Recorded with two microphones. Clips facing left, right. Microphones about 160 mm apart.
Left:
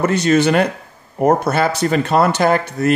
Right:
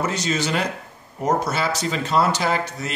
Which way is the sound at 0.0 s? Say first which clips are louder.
Left 10 dB; 60° left (ahead or behind).